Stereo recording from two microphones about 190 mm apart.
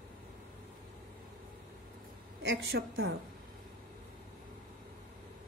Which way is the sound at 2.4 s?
75° right (ahead or behind).